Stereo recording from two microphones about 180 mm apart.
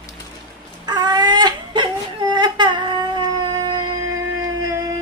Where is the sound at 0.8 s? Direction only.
20° right (ahead or behind).